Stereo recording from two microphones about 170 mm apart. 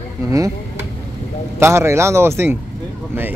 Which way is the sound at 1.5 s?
15° right (ahead or behind).